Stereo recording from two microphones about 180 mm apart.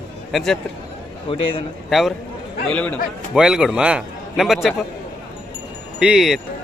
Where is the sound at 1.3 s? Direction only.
30° left (ahead or behind).